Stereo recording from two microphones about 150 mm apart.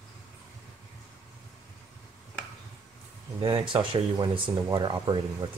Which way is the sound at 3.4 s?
35° right (ahead or behind).